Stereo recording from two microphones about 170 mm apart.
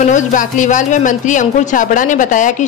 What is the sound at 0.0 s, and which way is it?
Speech, 50° left (ahead or behind).